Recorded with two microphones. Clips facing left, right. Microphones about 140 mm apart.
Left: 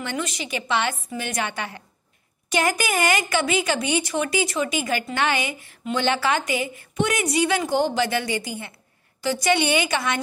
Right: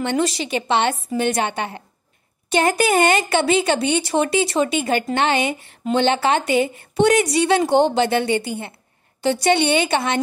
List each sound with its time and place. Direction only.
0.0 s a woman's voice: 30° right (ahead or behind)